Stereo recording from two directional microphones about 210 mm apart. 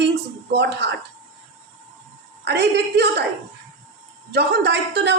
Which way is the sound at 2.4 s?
55° right (ahead or behind).